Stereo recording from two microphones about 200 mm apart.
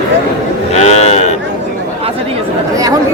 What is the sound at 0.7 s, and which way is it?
Speech, 35° left (ahead or behind).